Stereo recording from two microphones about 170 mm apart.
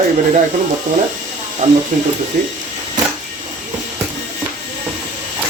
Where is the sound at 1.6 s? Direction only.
45° right (ahead or behind).